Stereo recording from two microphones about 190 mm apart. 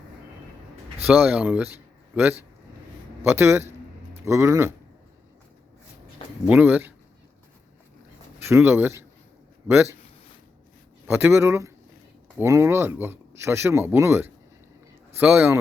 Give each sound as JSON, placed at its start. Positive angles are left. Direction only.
{"t": 1.0, "sound": "speech", "side_deg": -5}
{"t": 6.5, "sound": "speech", "side_deg": -10}
{"t": 8.4, "sound": "speech", "side_deg": -15}
{"t": 11.0, "sound": "speech", "side_deg": -10}